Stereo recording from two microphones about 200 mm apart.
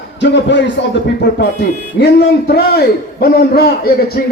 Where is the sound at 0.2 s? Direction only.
60° left (ahead or behind).